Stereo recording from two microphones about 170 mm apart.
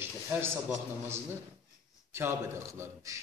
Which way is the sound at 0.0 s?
15° right (ahead or behind).